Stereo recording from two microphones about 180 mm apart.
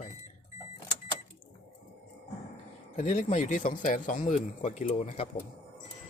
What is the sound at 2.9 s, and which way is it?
Speech, 45° left (ahead or behind).